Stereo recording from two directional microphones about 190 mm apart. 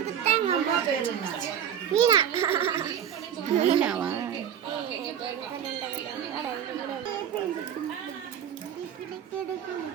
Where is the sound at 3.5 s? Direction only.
35° right (ahead or behind).